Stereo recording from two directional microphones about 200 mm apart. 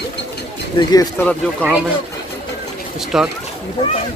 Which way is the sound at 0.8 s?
20° left (ahead or behind).